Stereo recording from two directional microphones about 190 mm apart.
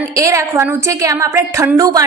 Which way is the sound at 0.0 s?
15° right (ahead or behind).